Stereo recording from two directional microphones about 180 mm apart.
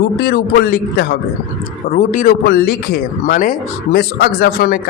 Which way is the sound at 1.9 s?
45° left (ahead or behind).